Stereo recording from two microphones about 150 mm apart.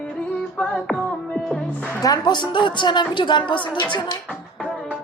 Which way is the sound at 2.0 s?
25° left (ahead or behind).